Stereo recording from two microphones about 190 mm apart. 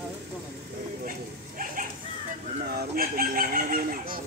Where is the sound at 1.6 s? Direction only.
45° right (ahead or behind).